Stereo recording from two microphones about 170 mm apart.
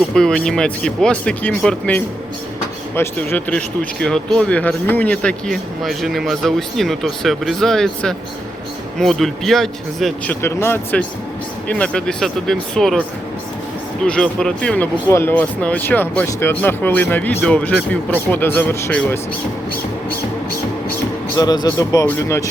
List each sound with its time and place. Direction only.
0.1 s speech: 5° left (ahead or behind)
10.4 s speech: 15° left (ahead or behind)
21.3 s speech: 25° left (ahead or behind)